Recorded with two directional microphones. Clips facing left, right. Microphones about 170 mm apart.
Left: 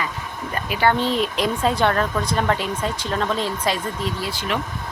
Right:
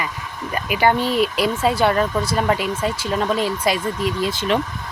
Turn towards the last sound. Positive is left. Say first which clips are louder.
# right 5 dB
turn(degrees=-25)  # may be behind; listen again after turning